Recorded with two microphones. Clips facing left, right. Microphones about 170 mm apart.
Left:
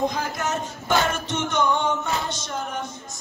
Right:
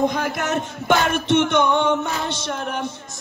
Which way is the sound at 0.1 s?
60° right (ahead or behind).